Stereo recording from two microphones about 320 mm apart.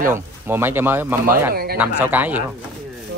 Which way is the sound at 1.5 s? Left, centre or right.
Right.